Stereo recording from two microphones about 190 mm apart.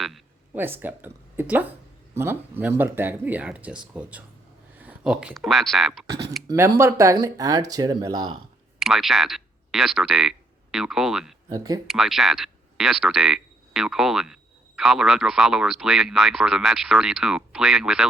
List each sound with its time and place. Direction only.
0.5 s speech: 10° right (ahead or behind)
4.8 s speech: 5° right (ahead or behind)
6.5 s speech: 15° right (ahead or behind)
8.8 s speech: centre (ahead or behind)
11.5 s speech: 20° right (ahead or behind)
11.9 s speech: centre (ahead or behind)